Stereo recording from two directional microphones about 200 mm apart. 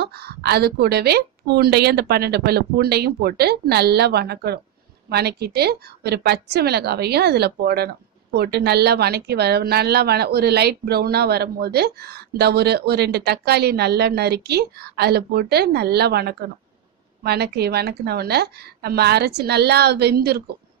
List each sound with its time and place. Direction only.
0.0 s a woman's voice: 55° right (ahead or behind)